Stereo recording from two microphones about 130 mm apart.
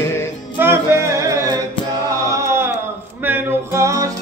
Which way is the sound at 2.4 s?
20° right (ahead or behind).